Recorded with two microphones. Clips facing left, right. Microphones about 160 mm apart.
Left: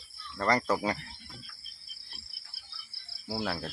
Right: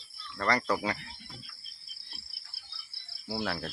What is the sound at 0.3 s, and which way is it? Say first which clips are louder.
Speech: left 1 dB; 20° left (ahead or behind).